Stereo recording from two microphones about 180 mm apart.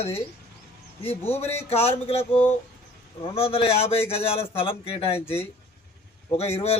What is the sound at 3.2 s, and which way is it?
A man's voice, 30° left (ahead or behind).